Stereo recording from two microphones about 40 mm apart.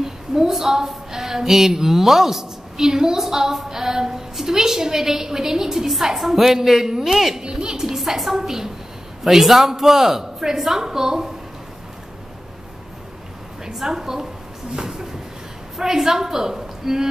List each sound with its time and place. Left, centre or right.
0.0 s a woman's voice: centre
7.4 s a sound: centre
8.0 s a woman's voice: centre
13.7 s a woman's voice: centre
15.8 s a woman's voice: centre